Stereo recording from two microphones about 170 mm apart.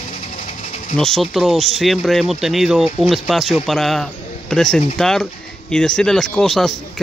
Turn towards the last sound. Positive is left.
turn(degrees=0)  # may be behind; listen again after turning